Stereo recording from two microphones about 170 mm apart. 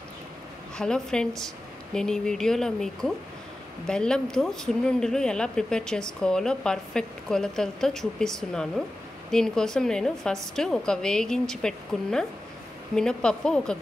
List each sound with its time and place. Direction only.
0.7 s speech: 5° left (ahead or behind)